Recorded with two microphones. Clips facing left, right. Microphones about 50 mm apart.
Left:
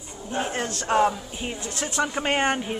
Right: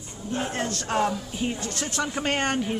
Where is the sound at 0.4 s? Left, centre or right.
Centre.